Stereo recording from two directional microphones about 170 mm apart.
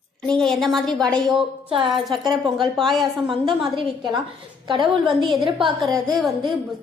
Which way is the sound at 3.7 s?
25° right (ahead or behind).